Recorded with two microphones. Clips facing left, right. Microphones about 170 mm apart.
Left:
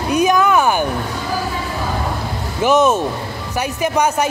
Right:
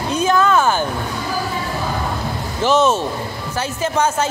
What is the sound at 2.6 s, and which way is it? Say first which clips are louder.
Speech: left 2 dB; 10° left (ahead or behind).